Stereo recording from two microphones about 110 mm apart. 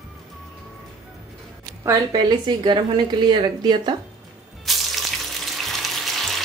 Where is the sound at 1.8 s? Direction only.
35° right (ahead or behind).